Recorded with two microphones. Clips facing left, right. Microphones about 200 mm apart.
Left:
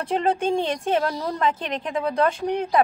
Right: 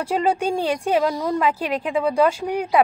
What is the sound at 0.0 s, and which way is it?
Speech, 10° right (ahead or behind).